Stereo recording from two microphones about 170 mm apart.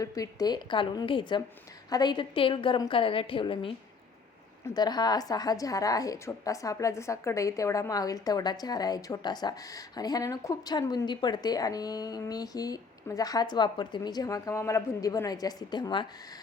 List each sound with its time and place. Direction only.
0.0 s a woman's voice: 20° left (ahead or behind)
4.7 s a woman's voice: 25° left (ahead or behind)